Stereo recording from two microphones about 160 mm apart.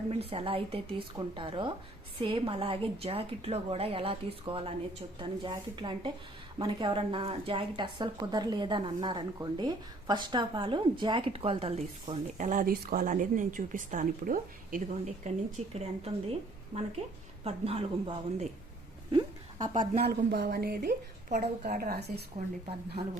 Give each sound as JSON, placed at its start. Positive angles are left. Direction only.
{"t": 0.3, "sound": "a woman's voice", "side_deg": -35}
{"t": 15.7, "sound": "speech", "side_deg": -40}
{"t": 19.1, "sound": "a sound", "side_deg": -25}
{"t": 20.0, "sound": "a woman's voice", "side_deg": -70}
{"t": 21.2, "sound": "a woman's voice", "side_deg": -50}
{"t": 21.8, "sound": "speech", "side_deg": -75}